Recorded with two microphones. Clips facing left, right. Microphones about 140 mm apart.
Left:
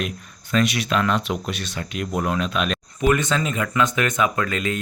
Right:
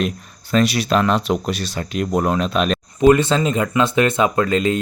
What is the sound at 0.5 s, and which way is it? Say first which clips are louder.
Speech: right 4 dB; 35° right (ahead or behind).